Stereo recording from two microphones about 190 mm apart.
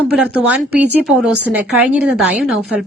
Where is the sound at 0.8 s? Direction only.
60° right (ahead or behind).